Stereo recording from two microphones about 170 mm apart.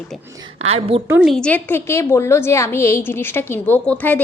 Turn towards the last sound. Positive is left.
turn(degrees=10)  # may be behind; listen again after turning